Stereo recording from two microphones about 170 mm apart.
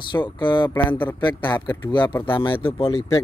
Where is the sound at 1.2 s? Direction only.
25° left (ahead or behind).